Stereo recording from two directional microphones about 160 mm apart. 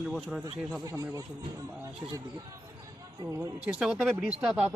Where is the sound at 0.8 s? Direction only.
20° right (ahead or behind).